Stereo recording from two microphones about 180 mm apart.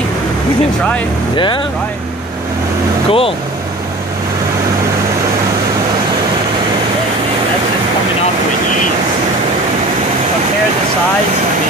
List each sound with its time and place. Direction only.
1.3 s speech: 25° left (ahead or behind)
3.1 s speech: 30° left (ahead or behind)